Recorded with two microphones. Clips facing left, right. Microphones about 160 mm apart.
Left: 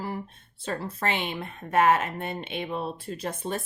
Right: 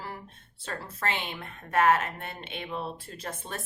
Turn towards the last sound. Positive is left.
turn(degrees=15)  # may be behind; listen again after turning